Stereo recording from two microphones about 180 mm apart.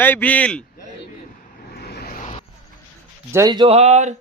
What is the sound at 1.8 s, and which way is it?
Vehicle, 60° left (ahead or behind).